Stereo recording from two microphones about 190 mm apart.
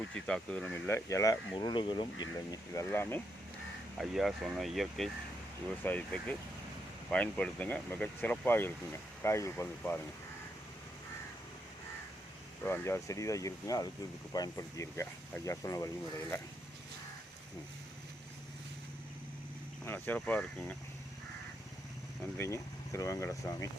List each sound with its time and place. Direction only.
0.1 s speech: 5° left (ahead or behind)
3.9 s speech: centre (ahead or behind)
12.6 s speech: 10° left (ahead or behind)
19.8 s speech: 10° left (ahead or behind)
22.4 s speech: 15° left (ahead or behind)